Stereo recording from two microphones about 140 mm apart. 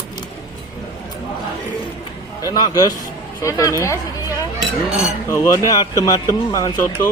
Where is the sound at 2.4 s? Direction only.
25° left (ahead or behind).